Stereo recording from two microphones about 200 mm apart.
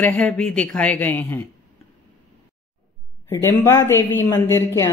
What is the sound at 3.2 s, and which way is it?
A man's voice, 10° left (ahead or behind).